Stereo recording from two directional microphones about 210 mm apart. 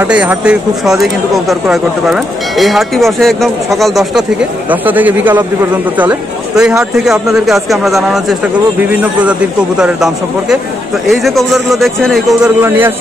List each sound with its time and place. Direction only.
0.0 s speech: 5° right (ahead or behind)